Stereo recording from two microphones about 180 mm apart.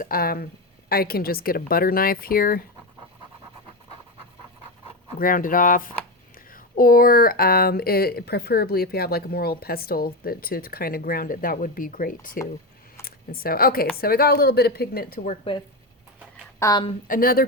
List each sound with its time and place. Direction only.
0.0 s speech: 55° left (ahead or behind)
5.2 s speech: 50° left (ahead or behind)
16.6 s a woman's voice: 20° left (ahead or behind)
17.1 s speech: 55° left (ahead or behind)